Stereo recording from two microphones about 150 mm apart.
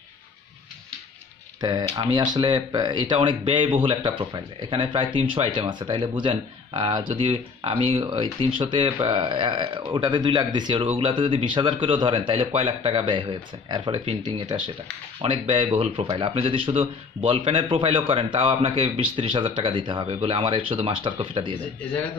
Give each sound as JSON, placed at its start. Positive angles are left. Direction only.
{"t": 1.6, "sound": "speech", "side_deg": -25}